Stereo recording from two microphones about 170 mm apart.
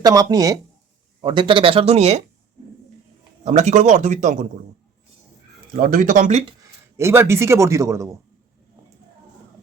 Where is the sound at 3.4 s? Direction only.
45° right (ahead or behind).